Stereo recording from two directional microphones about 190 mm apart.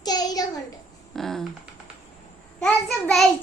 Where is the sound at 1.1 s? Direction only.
Centre (ahead or behind).